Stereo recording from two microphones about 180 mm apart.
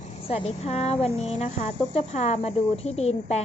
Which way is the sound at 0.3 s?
35° left (ahead or behind).